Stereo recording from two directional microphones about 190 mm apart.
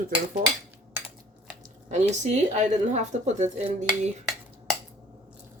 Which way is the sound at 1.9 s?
40° right (ahead or behind).